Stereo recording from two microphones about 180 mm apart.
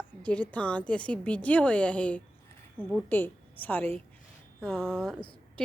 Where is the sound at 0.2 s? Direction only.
5° left (ahead or behind).